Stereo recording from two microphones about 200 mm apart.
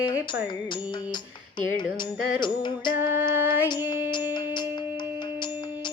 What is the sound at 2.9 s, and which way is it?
Music, 10° right (ahead or behind).